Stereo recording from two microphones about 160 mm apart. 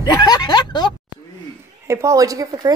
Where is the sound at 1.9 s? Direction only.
20° right (ahead or behind).